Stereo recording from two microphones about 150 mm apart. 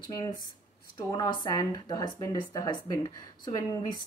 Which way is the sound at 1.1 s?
25° left (ahead or behind).